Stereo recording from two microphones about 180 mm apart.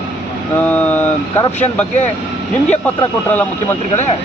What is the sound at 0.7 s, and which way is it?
Speech, 10° left (ahead or behind).